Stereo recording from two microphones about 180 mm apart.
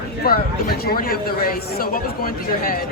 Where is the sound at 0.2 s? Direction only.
55° left (ahead or behind).